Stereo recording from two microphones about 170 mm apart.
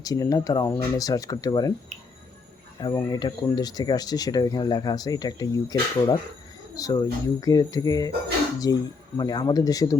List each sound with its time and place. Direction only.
0.0 s speech: 20° left (ahead or behind)
2.8 s speech: 25° left (ahead or behind)